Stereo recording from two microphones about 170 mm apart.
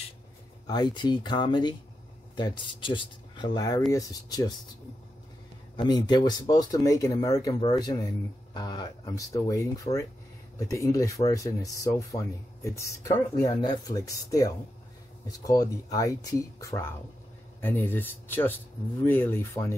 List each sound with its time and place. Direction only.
0.7 s speech: 25° left (ahead or behind)
5.8 s speech: 25° left (ahead or behind)
10.7 s speech: 20° left (ahead or behind)